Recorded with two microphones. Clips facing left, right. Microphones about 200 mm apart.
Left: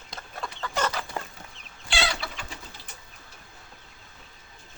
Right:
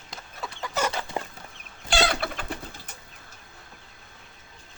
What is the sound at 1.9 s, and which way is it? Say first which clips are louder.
Chicken: right 5 dB; 50° right (ahead or behind).